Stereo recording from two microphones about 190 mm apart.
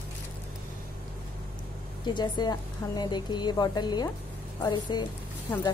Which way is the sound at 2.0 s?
20° left (ahead or behind).